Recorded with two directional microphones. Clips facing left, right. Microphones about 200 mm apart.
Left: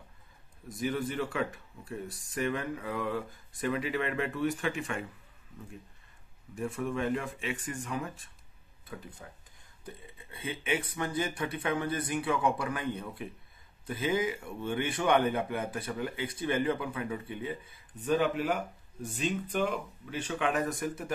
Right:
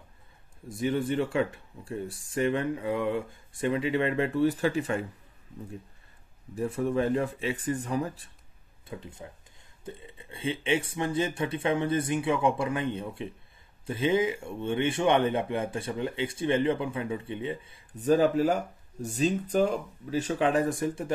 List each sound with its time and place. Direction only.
0.7 s speech: 30° right (ahead or behind)
6.5 s speech: 35° right (ahead or behind)
8.8 s speech: 25° right (ahead or behind)